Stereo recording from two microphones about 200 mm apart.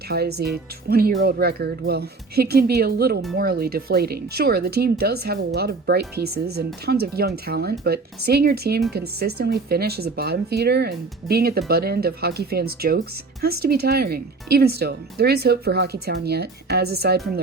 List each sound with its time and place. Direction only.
0.1 s speech: 55° right (ahead or behind)